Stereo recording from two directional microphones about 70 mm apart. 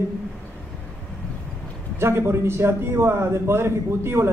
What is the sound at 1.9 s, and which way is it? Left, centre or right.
A man's voice, right.